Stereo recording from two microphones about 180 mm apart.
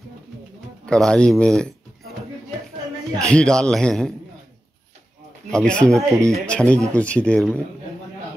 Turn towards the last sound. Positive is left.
turn(degrees=5)  # may be behind; listen again after turning